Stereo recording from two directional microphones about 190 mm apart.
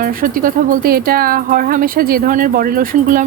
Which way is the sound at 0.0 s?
50° right (ahead or behind).